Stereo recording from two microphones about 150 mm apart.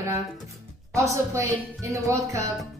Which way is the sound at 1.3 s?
20° right (ahead or behind).